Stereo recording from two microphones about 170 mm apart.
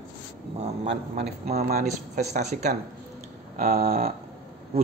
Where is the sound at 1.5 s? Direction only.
40° right (ahead or behind).